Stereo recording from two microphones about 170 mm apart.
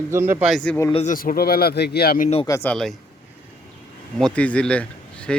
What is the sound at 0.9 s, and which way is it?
A man's voice, 50° left (ahead or behind).